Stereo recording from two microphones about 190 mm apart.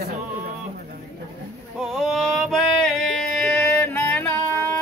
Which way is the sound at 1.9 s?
Centre (ahead or behind).